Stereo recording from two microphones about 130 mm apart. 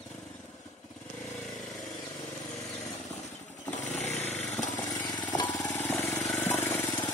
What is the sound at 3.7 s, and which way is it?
Chainsaw, 65° left (ahead or behind).